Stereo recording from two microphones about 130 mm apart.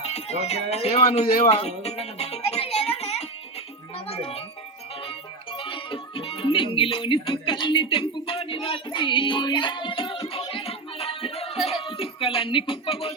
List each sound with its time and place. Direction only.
0.0 s speech: 55° left (ahead or behind)
5.5 s speech: 40° left (ahead or behind)
10.5 s music: 50° left (ahead or behind)
11.6 s speech: 45° left (ahead or behind)